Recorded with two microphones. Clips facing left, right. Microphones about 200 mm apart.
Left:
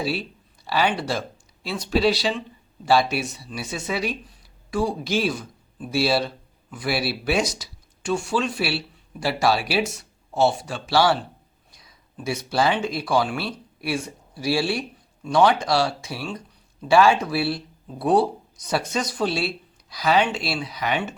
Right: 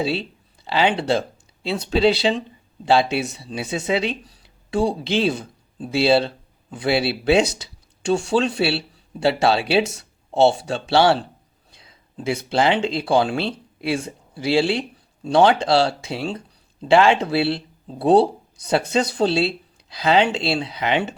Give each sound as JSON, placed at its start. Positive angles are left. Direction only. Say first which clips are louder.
{"t": 0.0, "sound": "speech", "louder": "right 3 dB", "side_deg": -25}
{"t": 11.8, "sound": "a sound", "louder": "right 4 dB", "side_deg": -25}
{"t": 12.5, "sound": "speech", "louder": "right 3 dB", "side_deg": -20}